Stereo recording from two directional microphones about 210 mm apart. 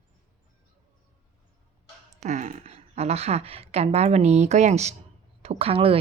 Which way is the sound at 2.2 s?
35° right (ahead or behind).